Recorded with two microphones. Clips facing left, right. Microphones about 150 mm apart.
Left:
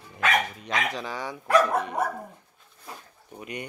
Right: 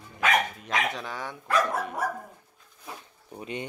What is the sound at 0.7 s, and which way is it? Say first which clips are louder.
Speech: even; centre (ahead or behind).